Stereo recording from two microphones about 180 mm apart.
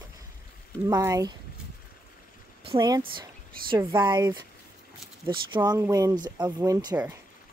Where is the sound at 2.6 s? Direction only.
30° right (ahead or behind).